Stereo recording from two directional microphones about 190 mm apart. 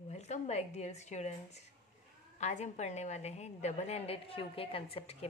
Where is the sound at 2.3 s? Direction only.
35° left (ahead or behind).